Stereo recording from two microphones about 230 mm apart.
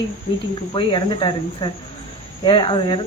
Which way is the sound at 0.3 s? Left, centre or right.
Left.